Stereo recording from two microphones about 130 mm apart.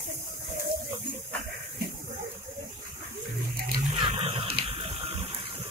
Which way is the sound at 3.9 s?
45° right (ahead or behind).